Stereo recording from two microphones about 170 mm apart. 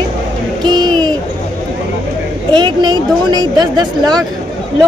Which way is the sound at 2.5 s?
25° right (ahead or behind).